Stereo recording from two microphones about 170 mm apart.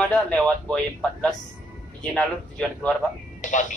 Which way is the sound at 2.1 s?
5° left (ahead or behind).